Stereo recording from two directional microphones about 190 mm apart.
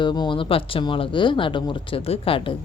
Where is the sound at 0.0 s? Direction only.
25° left (ahead or behind).